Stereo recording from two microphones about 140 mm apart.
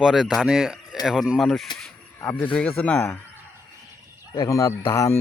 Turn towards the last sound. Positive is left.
turn(degrees=25)  # may be behind; listen again after turning